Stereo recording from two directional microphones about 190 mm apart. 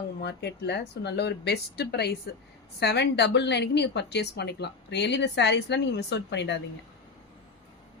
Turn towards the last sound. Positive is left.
turn(degrees=65)  # may be behind; listen again after turning